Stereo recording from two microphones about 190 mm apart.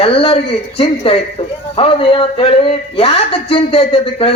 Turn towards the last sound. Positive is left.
turn(degrees=30)  # may be behind; listen again after turning